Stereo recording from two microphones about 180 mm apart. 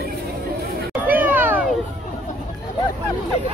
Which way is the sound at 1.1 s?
10° right (ahead or behind).